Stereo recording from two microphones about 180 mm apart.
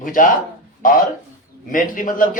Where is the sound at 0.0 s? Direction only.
45° left (ahead or behind).